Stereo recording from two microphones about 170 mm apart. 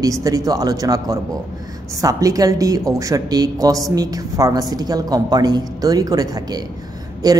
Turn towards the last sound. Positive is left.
turn(degrees=-20)  # may be behind; listen again after turning